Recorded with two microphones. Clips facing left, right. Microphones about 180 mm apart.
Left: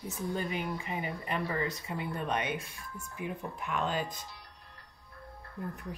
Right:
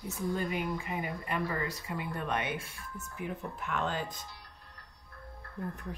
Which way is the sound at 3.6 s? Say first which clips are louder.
Left 2 dB; 15° left (ahead or behind).